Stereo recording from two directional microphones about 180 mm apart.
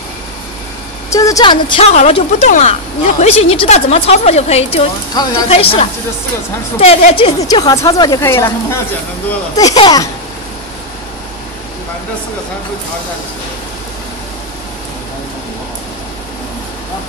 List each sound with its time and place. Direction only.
1.1 s a woman's voice: 20° left (ahead or behind)
2.0 s a woman's voice: 40° left (ahead or behind)
5.2 s a woman's voice: 20° left (ahead or behind)
5.5 s a woman's voice: 30° left (ahead or behind)